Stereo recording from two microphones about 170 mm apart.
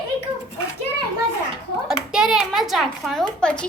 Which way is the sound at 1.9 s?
5° right (ahead or behind).